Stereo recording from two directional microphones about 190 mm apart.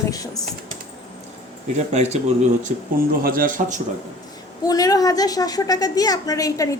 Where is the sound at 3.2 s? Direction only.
50° right (ahead or behind).